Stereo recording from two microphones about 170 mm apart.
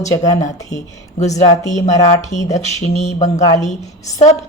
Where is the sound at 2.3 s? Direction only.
40° left (ahead or behind).